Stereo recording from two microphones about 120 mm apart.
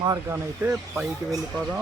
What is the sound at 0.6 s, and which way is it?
Speech, 10° right (ahead or behind).